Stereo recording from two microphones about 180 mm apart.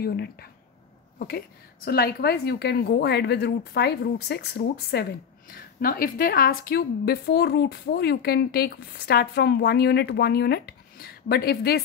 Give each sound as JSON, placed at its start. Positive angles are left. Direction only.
{"t": 0.0, "sound": "a woman's voice", "side_deg": 60}
{"t": 1.9, "sound": "a woman's voice", "side_deg": 60}